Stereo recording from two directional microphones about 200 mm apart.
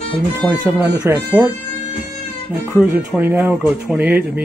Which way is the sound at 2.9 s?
10° right (ahead or behind).